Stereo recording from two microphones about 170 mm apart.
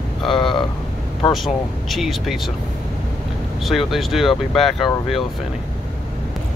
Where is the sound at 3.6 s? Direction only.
Centre (ahead or behind).